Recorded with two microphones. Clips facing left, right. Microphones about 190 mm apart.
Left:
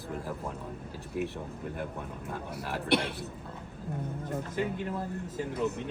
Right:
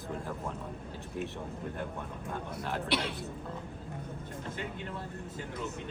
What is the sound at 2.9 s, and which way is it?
Speech, 55° left (ahead or behind).